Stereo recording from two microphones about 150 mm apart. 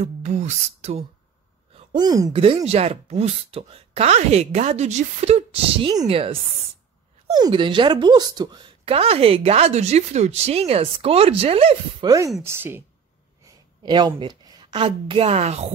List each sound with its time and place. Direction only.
0.0 s a sound: 50° right (ahead or behind)
2.0 s speech: 25° right (ahead or behind)
2.3 s a woman's voice: 35° right (ahead or behind)
7.3 s a woman's voice: 30° right (ahead or behind)
12.4 s a woman's voice: 15° right (ahead or behind)
13.4 s a woman's voice: 25° right (ahead or behind); by 15.7 s 45° right (ahead or behind)